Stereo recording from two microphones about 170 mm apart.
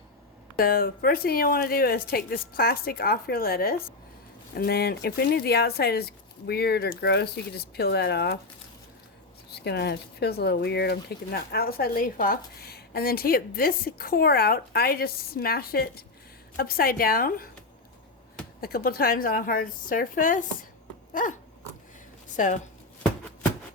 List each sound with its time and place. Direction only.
0.5 s speech: 60° left (ahead or behind)
9.6 s speech: 75° left (ahead or behind); by 17.5 s 60° left (ahead or behind)
18.6 s speech: 60° left (ahead or behind)
21.1 s a sound: 50° left (ahead or behind)
22.4 s speech: 50° left (ahead or behind)